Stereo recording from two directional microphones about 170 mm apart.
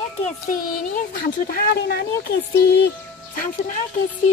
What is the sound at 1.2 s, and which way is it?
Speech, 65° left (ahead or behind).